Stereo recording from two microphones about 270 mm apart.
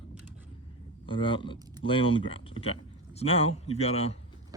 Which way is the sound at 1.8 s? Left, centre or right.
Centre.